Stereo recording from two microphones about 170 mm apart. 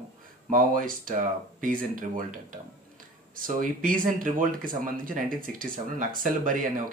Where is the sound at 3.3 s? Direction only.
55° right (ahead or behind).